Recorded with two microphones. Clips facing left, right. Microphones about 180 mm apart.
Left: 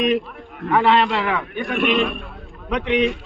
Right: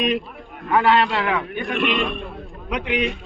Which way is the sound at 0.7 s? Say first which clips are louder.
Left 1 dB; centre (ahead or behind).